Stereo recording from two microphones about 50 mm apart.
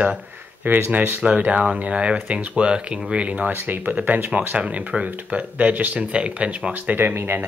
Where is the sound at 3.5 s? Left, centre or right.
Right.